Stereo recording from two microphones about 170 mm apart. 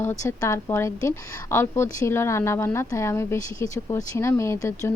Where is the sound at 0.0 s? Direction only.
15° left (ahead or behind).